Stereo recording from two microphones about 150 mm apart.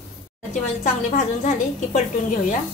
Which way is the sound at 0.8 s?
50° left (ahead or behind).